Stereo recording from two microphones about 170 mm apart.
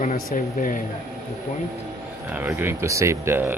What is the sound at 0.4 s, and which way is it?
Speech, 60° left (ahead or behind).